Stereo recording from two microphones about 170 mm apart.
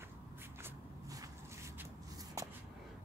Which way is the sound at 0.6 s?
20° right (ahead or behind).